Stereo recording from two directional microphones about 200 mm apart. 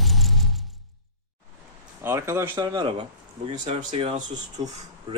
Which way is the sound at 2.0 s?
15° right (ahead or behind).